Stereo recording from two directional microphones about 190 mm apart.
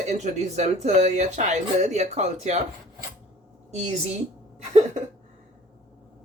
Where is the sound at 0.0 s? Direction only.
40° right (ahead or behind).